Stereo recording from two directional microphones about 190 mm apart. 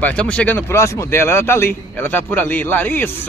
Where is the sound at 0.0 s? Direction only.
5° left (ahead or behind).